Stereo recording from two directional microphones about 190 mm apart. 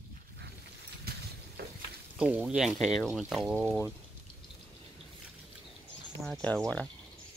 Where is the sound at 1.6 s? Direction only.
55° right (ahead or behind).